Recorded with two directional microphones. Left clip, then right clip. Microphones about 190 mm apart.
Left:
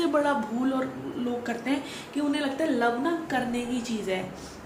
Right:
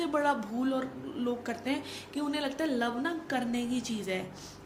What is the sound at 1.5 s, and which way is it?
A woman's voice, 45° right (ahead or behind).